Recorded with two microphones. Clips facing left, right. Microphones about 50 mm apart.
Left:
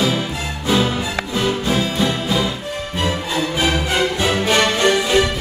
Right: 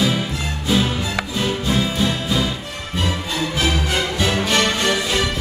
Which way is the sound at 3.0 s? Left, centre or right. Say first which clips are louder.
Left 2 dB; centre.